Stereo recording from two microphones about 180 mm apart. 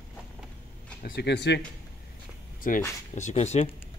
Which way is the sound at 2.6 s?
50° left (ahead or behind).